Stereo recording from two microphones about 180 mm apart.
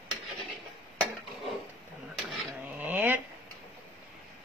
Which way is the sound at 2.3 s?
Centre (ahead or behind).